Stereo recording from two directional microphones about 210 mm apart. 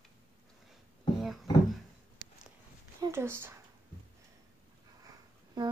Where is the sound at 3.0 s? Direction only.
10° right (ahead or behind).